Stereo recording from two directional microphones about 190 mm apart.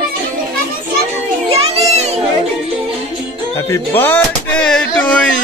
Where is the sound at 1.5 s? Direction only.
30° right (ahead or behind).